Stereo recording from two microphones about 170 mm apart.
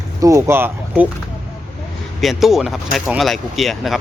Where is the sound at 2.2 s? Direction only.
Centre (ahead or behind).